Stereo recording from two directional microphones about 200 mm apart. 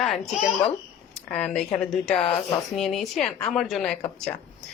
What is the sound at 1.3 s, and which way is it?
Speech, 5° left (ahead or behind).